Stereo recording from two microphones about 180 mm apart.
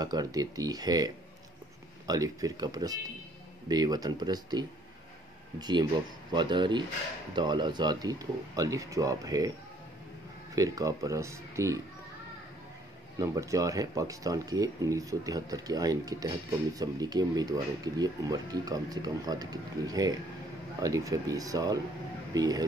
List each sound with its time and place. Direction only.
0.0 s speech: 20° right (ahead or behind)
10.5 s speech: 20° right (ahead or behind)
13.2 s speech: 15° right (ahead or behind)